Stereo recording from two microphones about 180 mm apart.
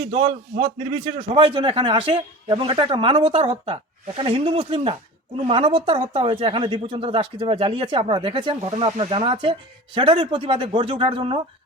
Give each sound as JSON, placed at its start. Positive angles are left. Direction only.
{"t": 0.0, "sound": "speech", "side_deg": -30}